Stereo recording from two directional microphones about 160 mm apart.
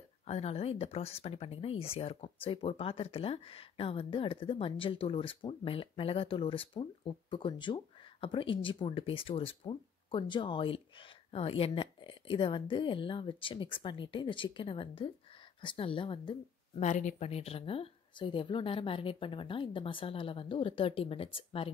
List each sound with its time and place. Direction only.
0.3 s speech: 40° left (ahead or behind)
16.8 s speech: 50° left (ahead or behind)